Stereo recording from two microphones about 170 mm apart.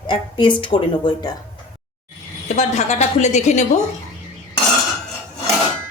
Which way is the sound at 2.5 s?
45° left (ahead or behind).